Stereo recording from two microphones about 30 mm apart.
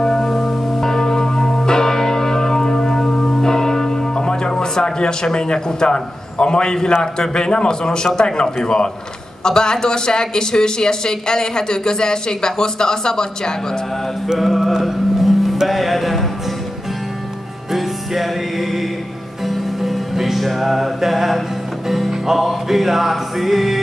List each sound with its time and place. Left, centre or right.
0.0 s church bell: centre
4.1 s speech: left
14.4 s music: centre
17.7 s music: centre